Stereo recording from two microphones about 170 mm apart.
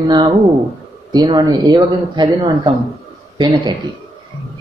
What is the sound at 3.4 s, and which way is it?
Speech, 25° right (ahead or behind).